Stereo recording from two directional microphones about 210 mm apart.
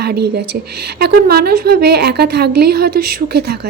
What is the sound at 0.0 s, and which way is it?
A woman's voice, 50° right (ahead or behind).